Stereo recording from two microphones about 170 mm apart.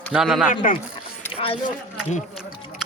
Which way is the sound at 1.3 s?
35° left (ahead or behind).